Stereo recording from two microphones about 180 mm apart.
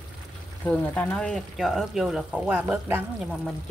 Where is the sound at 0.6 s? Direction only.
10° left (ahead or behind); by 3.0 s 10° right (ahead or behind).